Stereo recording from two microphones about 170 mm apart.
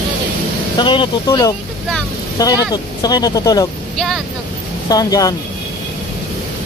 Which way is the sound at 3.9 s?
Centre (ahead or behind).